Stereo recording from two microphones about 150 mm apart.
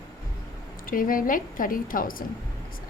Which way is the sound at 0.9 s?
65° left (ahead or behind).